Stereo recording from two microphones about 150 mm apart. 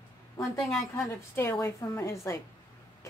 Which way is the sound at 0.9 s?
20° left (ahead or behind).